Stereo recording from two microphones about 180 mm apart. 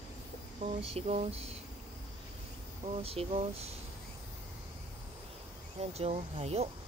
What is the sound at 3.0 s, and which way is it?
Speech, 30° right (ahead or behind).